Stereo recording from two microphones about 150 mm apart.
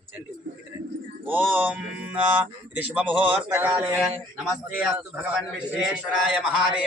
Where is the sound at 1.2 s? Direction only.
10° right (ahead or behind).